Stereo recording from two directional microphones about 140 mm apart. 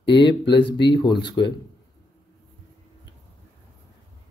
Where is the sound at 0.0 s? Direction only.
35° left (ahead or behind).